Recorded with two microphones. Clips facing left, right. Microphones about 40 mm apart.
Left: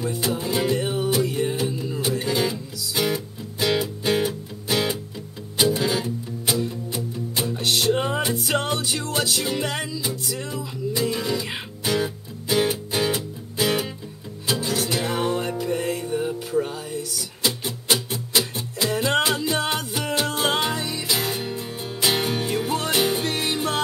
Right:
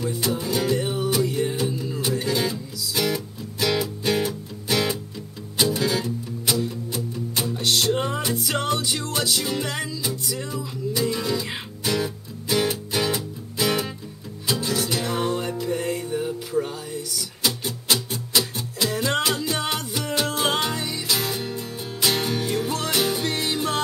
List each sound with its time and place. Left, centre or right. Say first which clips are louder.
0.2 s music: left 1 dB; left
0.7 s music: left 1 dB; centre
11.9 s music: left 1 dB; left
15.6 s music: left 1 dB; centre; by 23.8 s left